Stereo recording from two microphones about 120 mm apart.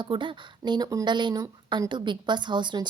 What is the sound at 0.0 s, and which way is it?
Speech, 40° right (ahead or behind).